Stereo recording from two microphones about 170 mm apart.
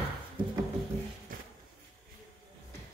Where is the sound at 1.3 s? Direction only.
55° right (ahead or behind).